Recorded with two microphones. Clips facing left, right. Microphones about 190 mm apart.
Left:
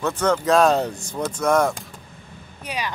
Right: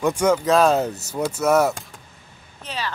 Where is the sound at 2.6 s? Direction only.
15° left (ahead or behind).